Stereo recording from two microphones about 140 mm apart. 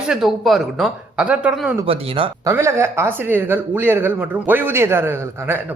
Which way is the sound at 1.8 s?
40° right (ahead or behind).